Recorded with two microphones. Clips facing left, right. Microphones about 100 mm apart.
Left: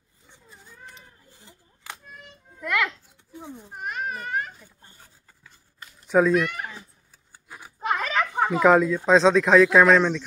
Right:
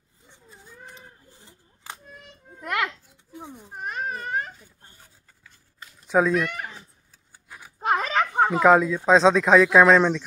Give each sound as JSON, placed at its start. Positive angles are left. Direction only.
{"t": 2.6, "sound": "children playing", "side_deg": -45}
{"t": 6.0, "sound": "speech", "side_deg": 0}
{"t": 8.1, "sound": "a sound", "side_deg": -40}
{"t": 8.5, "sound": "speech", "side_deg": -5}
{"t": 9.8, "sound": "speech", "side_deg": -15}